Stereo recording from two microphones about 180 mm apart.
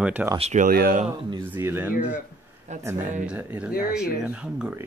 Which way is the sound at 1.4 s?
10° right (ahead or behind).